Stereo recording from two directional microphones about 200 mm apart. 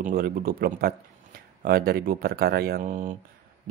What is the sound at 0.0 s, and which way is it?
Speech, 45° right (ahead or behind).